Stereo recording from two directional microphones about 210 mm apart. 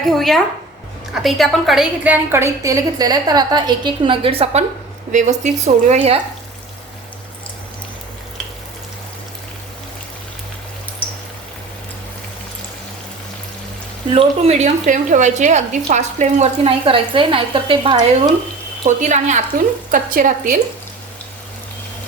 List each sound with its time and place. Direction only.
0.0 s a woman's voice: centre (ahead or behind); by 6.1 s 30° right (ahead or behind)
14.1 s a woman's voice: 30° right (ahead or behind)
18.9 s a woman's voice: 35° right (ahead or behind)